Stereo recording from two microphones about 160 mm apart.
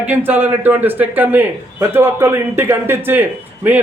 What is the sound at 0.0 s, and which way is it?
A man's voice, 10° right (ahead or behind).